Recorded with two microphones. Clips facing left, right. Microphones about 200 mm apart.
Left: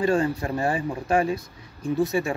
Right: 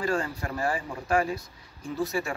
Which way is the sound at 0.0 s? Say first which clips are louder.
Left 6 dB; 25° left (ahead or behind).